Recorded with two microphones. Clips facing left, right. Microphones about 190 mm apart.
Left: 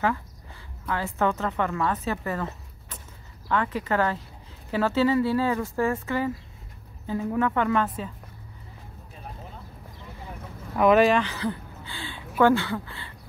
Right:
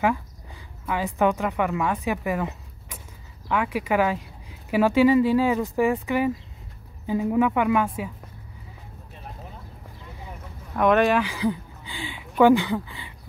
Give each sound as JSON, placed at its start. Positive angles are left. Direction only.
{"t": 0.8, "sound": "a woman's voice", "side_deg": -15}
{"t": 10.8, "sound": "speech", "side_deg": 5}
{"t": 11.1, "sound": "speech", "side_deg": -10}